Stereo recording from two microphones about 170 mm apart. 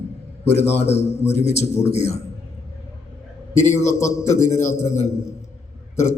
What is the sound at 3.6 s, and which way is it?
Speech, 15° left (ahead or behind).